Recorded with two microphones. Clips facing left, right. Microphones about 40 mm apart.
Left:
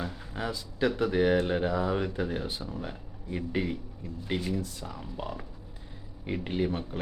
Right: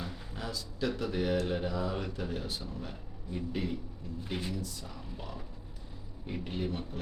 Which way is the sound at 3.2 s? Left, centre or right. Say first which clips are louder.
Left 4 dB; left.